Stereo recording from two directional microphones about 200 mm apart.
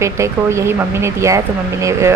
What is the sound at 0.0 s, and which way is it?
Speech, 15° right (ahead or behind).